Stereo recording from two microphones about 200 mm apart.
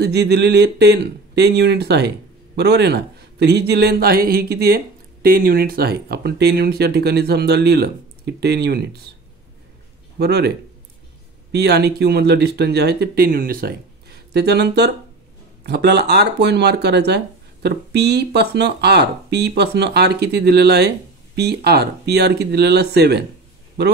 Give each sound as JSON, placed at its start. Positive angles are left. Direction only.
{"t": 0.0, "sound": "speech", "side_deg": -55}
{"t": 10.1, "sound": "speech", "side_deg": -55}
{"t": 11.5, "sound": "speech", "side_deg": -55}